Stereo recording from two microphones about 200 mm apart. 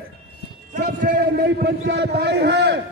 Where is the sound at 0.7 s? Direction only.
45° right (ahead or behind).